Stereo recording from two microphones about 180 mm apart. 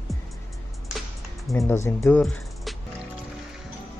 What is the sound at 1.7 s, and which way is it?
Speech, 15° left (ahead or behind).